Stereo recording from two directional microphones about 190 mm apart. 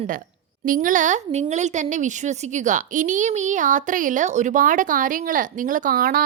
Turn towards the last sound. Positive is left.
turn(degrees=-50)  # may be behind; listen again after turning